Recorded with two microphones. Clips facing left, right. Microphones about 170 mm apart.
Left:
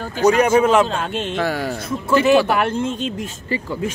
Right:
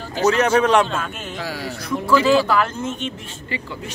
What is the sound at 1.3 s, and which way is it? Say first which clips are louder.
Speech: left 7 dB; 55° left (ahead or behind).